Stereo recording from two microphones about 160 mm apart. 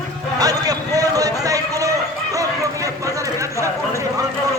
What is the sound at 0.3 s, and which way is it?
Run, 20° right (ahead or behind).